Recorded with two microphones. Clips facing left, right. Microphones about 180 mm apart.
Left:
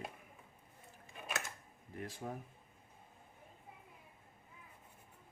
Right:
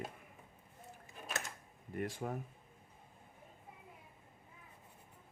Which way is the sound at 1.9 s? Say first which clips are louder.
Right 5 dB; 70° right (ahead or behind).